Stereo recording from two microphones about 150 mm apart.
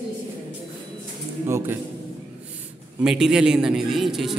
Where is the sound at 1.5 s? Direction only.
15° right (ahead or behind).